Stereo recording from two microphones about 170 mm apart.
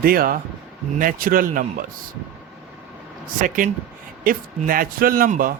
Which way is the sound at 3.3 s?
50° right (ahead or behind).